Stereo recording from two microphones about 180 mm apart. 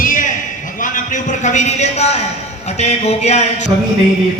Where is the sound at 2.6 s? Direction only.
35° left (ahead or behind).